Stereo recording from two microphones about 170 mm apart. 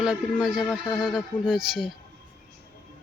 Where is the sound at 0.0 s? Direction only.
5° right (ahead or behind).